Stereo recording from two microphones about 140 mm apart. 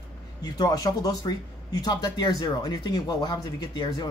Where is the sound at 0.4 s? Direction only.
25° left (ahead or behind).